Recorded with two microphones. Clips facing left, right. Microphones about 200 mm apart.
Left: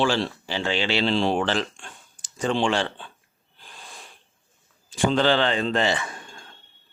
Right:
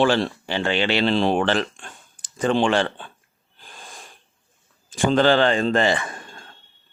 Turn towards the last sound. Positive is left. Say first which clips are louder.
# right 3 dB
turn(degrees=-50)  # may be behind; listen again after turning